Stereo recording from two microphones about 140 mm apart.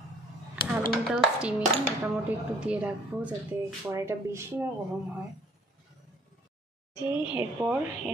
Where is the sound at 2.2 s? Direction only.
10° right (ahead or behind).